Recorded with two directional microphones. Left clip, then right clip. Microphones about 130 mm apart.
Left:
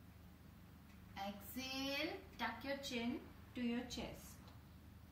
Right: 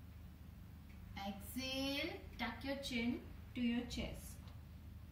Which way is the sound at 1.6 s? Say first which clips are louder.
Right 3 dB; 5° right (ahead or behind).